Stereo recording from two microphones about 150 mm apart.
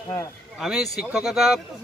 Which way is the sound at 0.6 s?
5° right (ahead or behind).